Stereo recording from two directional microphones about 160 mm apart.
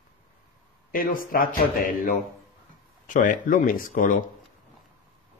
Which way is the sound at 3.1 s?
55° left (ahead or behind).